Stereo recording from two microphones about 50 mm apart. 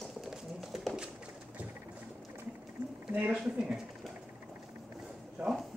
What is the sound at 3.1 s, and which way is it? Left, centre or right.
Speech, right.